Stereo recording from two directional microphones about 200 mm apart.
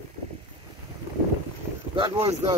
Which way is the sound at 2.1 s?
15° right (ahead or behind).